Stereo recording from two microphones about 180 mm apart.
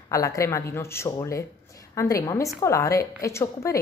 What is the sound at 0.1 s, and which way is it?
Speech, 20° left (ahead or behind).